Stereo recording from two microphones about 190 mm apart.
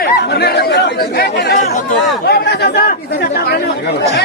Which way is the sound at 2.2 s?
60° left (ahead or behind).